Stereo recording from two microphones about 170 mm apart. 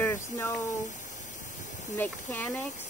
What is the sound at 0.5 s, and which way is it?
Speech, 45° left (ahead or behind).